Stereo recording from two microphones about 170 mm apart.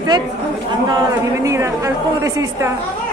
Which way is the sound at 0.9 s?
20° right (ahead or behind).